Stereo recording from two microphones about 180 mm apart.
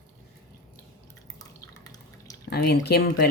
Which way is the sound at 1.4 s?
20° left (ahead or behind).